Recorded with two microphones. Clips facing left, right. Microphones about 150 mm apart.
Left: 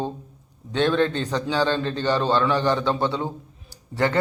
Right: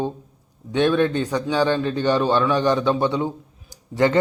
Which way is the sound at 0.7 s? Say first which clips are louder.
Right 2 dB; 15° right (ahead or behind).